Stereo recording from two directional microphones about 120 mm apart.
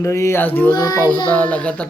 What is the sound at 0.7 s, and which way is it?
Child singing, 35° left (ahead or behind).